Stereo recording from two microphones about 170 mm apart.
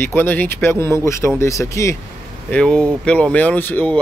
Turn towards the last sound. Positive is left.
turn(degrees=10)  # may be behind; listen again after turning